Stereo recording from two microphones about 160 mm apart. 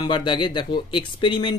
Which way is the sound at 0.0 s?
30° left (ahead or behind).